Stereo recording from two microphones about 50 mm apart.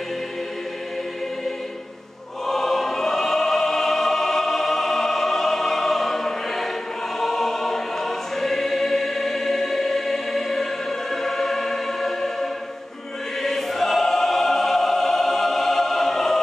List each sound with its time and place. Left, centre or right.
2.4 s choir: centre